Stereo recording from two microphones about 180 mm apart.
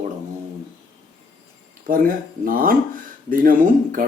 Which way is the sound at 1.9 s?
50° right (ahead or behind).